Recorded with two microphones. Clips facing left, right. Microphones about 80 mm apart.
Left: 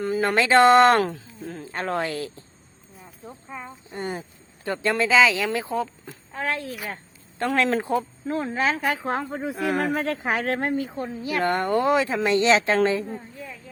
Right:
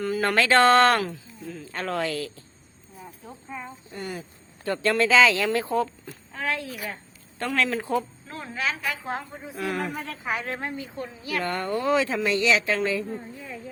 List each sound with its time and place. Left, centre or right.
0.0 s speech: left
0.9 s speech: left
1.6 s speech: left
3.2 s speech: centre
3.9 s speech: left
4.6 s speech: centre
6.1 s a woman's voice: left
10.8 s a woman's voice: left